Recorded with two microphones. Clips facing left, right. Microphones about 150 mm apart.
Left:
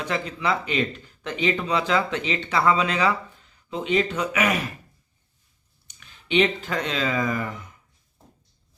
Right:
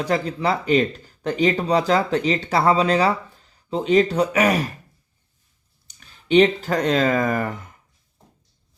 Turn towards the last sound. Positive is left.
turn(degrees=-50)  # may be behind; listen again after turning